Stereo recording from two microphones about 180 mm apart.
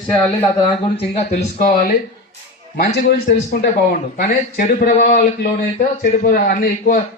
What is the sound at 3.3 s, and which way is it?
Speech, 60° left (ahead or behind).